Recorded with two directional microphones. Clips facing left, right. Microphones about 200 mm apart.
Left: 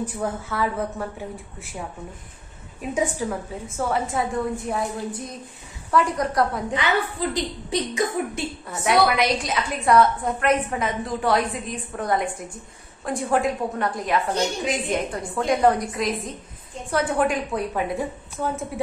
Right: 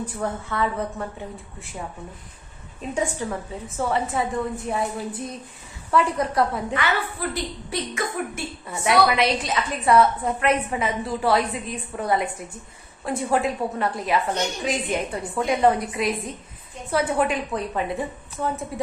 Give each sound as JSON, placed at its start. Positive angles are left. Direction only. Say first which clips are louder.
{"t": 0.2, "sound": "a woman's voice", "louder": "right 1 dB", "side_deg": 5}
{"t": 2.8, "sound": "a woman's voice", "louder": "left 2 dB", "side_deg": 5}
{"t": 6.7, "sound": "a woman's voice", "louder": "left 2 dB", "side_deg": 15}
{"t": 8.6, "sound": "a woman's voice", "louder": "even", "side_deg": 0}